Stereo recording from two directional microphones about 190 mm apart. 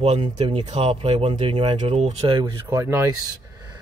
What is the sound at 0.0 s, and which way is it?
Speech, 35° right (ahead or behind).